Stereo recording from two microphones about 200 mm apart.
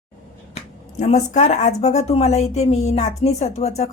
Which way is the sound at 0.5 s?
35° left (ahead or behind).